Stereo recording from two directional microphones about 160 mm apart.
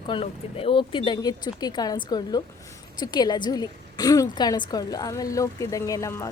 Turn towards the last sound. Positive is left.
turn(degrees=20)  # may be behind; listen again after turning